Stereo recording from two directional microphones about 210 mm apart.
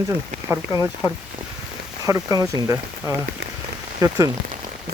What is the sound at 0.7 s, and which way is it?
Speech, 20° left (ahead or behind).